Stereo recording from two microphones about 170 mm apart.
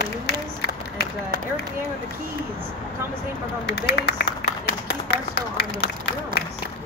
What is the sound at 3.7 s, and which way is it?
Speech, 75° left (ahead or behind).